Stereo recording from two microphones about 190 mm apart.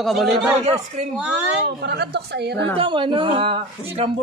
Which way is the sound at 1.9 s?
60° right (ahead or behind).